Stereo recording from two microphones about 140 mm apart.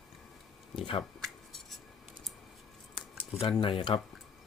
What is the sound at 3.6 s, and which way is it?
Speech, 35° left (ahead or behind).